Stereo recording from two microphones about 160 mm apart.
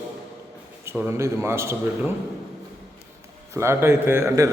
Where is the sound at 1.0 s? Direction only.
15° right (ahead or behind).